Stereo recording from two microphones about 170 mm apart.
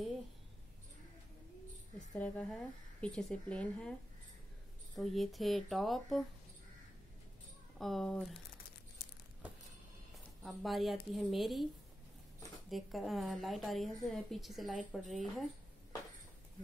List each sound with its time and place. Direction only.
2.1 s speech: 10° left (ahead or behind)
4.9 s a woman's voice: centre (ahead or behind)
7.8 s a woman's voice: centre (ahead or behind)
9.0 s crumpling: 65° left (ahead or behind)
10.4 s a woman's voice: centre (ahead or behind)
12.6 s a woman's voice: centre (ahead or behind)